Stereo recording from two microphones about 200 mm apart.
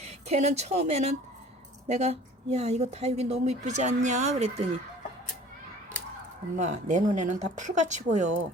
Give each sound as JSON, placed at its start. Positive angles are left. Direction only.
{"t": 0.0, "sound": "speech", "side_deg": -35}
{"t": 6.6, "sound": "speech", "side_deg": -35}